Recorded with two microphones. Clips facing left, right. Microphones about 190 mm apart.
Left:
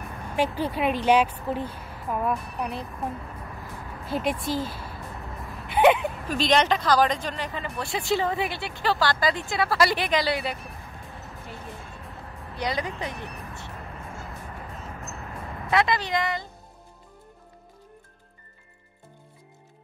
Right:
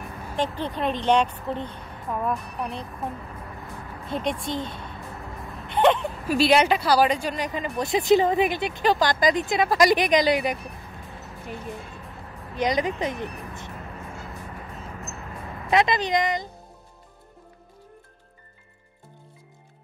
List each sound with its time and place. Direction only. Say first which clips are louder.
0.4 s a woman's voice: left 2 dB; 10° left (ahead or behind)
6.2 s speech: right 4 dB; 10° right (ahead or behind)
12.5 s speech: right 5 dB; 20° right (ahead or behind)
15.7 s speech: right 3 dB; 20° right (ahead or behind)